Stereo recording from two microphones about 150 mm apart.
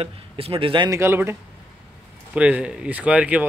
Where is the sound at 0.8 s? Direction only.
20° right (ahead or behind).